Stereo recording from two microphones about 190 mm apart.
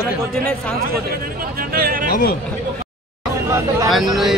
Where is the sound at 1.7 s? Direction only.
50° right (ahead or behind).